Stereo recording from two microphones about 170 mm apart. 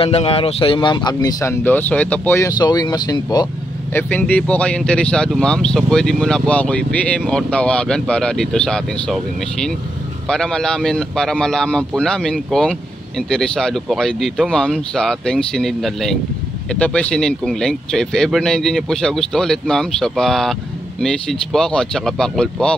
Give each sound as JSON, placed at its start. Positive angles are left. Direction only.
{"t": 0.0, "sound": "speech", "side_deg": 35}
{"t": 3.9, "sound": "speech", "side_deg": 10}